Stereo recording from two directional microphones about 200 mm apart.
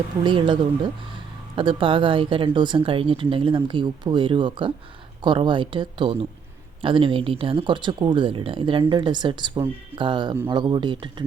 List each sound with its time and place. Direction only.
0.3 s speech: 25° right (ahead or behind)